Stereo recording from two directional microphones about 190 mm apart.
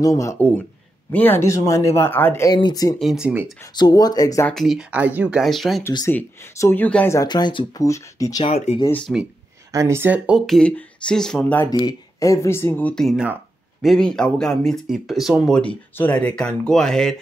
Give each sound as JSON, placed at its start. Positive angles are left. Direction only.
{"t": 0.0, "sound": "speech", "side_deg": 15}
{"t": 3.0, "sound": "speech", "side_deg": 0}
{"t": 3.7, "sound": "speech", "side_deg": 20}
{"t": 4.6, "sound": "speech", "side_deg": 0}
{"t": 5.9, "sound": "speech", "side_deg": 15}
{"t": 8.5, "sound": "speech", "side_deg": 35}
{"t": 8.8, "sound": "speech", "side_deg": 10}
{"t": 9.7, "sound": "speech", "side_deg": -15}
{"t": 11.7, "sound": "speech", "side_deg": 20}